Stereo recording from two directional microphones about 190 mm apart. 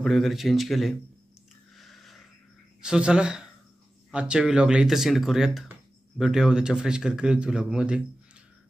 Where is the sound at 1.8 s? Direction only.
Centre (ahead or behind).